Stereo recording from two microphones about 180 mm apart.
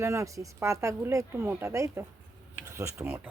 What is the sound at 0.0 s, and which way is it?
Speech, 15° right (ahead or behind).